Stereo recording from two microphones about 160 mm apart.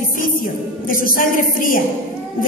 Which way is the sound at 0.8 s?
60° left (ahead or behind).